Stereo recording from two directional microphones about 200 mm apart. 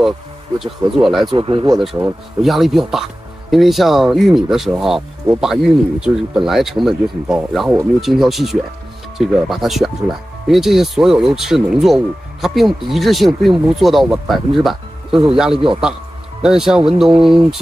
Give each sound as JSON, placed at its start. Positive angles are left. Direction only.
{"t": 0.6, "sound": "speech", "side_deg": 0}
{"t": 1.3, "sound": "speech", "side_deg": -25}
{"t": 2.4, "sound": "speech", "side_deg": 0}
{"t": 15.0, "sound": "speech", "side_deg": -25}
{"t": 15.3, "sound": "speech", "side_deg": -5}